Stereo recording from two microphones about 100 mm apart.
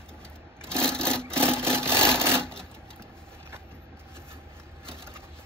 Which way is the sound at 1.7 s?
25° right (ahead or behind).